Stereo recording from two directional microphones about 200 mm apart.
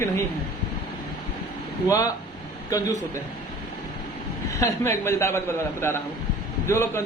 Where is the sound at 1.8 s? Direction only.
15° left (ahead or behind).